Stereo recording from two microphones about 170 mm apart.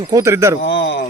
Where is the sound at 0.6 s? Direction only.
90° left.